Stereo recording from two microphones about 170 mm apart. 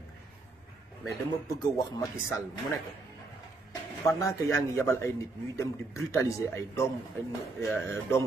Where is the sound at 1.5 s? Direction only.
20° left (ahead or behind).